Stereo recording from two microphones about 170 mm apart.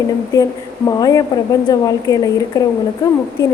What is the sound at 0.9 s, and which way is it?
A woman's voice, 20° left (ahead or behind).